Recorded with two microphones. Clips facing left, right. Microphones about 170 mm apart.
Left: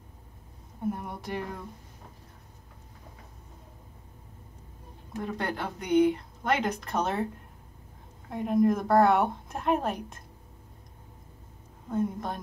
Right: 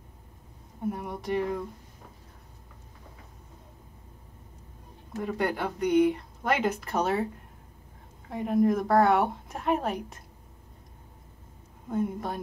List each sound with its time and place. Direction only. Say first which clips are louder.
0.8 s speech: right 2 dB; centre (ahead or behind)
5.2 s speech: right 4 dB; 5° right (ahead or behind)
8.3 s speech: even; centre (ahead or behind)
11.9 s speech: even; 5° right (ahead or behind)